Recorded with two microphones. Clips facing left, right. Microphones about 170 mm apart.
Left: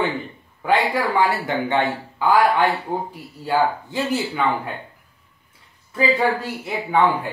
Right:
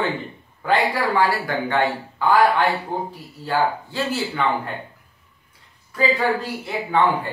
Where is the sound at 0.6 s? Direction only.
20° left (ahead or behind).